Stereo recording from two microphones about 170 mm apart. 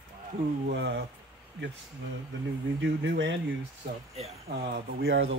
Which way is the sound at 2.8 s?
90° right.